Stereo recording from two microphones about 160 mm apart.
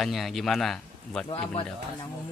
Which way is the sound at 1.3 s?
35° left (ahead or behind).